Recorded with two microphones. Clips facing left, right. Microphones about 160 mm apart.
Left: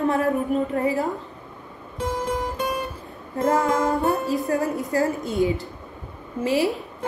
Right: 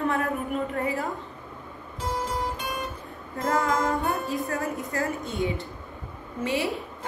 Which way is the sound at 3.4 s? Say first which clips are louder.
Left 4 dB; 30° left (ahead or behind).